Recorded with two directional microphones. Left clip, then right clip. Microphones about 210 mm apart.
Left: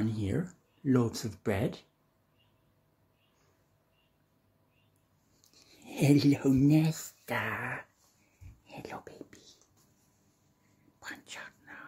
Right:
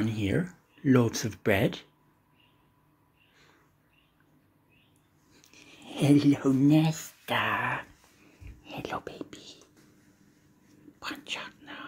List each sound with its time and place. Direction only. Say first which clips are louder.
0.0 s speech: right 5 dB; 10° left (ahead or behind)
5.5 s a sound: right 7 dB; 15° left (ahead or behind)
5.9 s speech: right 3 dB; 35° left (ahead or behind)
7.3 s speech: right 7 dB; 10° left (ahead or behind)
8.6 s whispering: right 8 dB; 5° left (ahead or behind)
11.0 s whispering: right 8 dB; 5° left (ahead or behind)